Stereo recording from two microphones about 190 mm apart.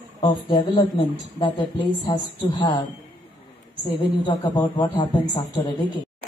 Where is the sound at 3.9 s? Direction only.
20° left (ahead or behind).